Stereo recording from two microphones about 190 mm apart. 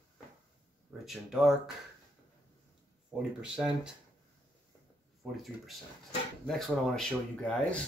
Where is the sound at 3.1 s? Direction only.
5° right (ahead or behind).